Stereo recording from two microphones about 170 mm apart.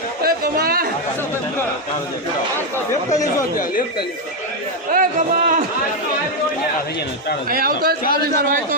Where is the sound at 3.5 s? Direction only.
55° left (ahead or behind).